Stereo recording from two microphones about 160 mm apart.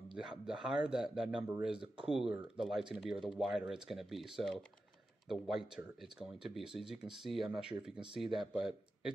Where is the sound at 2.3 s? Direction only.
5° right (ahead or behind).